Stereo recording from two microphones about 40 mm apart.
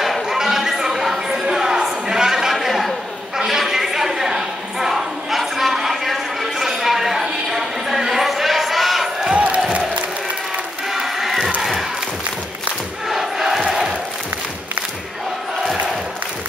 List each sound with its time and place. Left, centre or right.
0.0 s a sound: centre
9.3 s crowd: right
10.9 s crowd: centre
13.1 s crowd: centre